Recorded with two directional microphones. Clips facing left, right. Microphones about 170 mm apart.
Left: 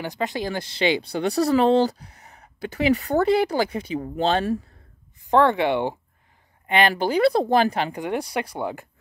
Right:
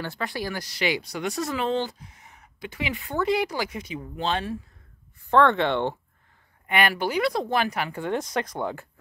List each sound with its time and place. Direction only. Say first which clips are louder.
0.0 s speech: left 4 dB; 20° left (ahead or behind); by 4.6 s 35° left (ahead or behind)
5.3 s speech: left 2 dB; 10° left (ahead or behind)
6.7 s speech: left 4 dB; 30° left (ahead or behind)
7.9 s speech: left 1 dB; 15° left (ahead or behind)